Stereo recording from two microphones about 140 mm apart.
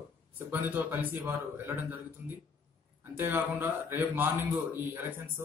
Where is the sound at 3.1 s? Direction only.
15° right (ahead or behind).